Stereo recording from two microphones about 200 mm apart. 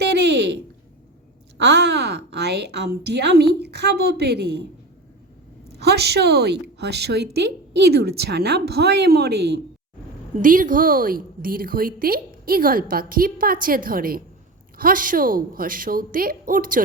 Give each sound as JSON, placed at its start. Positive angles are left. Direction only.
{"t": 0.0, "sound": "a sound", "side_deg": -60}
{"t": 1.5, "sound": "a woman's voice", "side_deg": -60}
{"t": 5.8, "sound": "a woman's voice", "side_deg": -55}
{"t": 10.4, "sound": "a woman's voice", "side_deg": -40}